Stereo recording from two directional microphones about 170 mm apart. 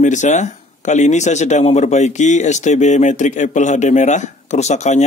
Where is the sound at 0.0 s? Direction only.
45° left (ahead or behind).